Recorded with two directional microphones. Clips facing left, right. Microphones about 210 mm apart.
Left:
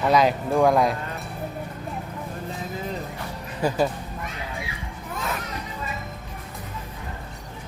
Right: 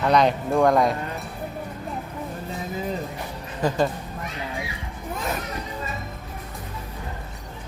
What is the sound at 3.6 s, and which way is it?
Speech, 5° left (ahead or behind).